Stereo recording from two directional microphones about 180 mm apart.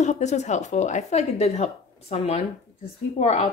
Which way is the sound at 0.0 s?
40° left (ahead or behind).